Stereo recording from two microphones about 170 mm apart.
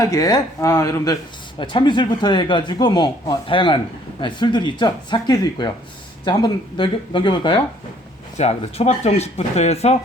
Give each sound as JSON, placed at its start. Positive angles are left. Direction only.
{"t": 0.0, "sound": "speech", "side_deg": 20}
{"t": 1.5, "sound": "speech", "side_deg": 30}
{"t": 8.4, "sound": "speech", "side_deg": 40}